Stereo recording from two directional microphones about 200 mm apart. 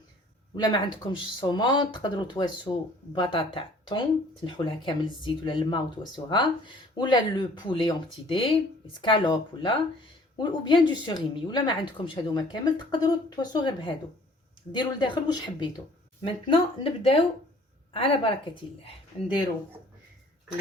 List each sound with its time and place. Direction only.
0.5 s speech: 20° left (ahead or behind)